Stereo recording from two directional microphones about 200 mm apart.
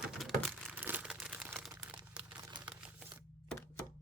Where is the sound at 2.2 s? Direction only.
20° right (ahead or behind).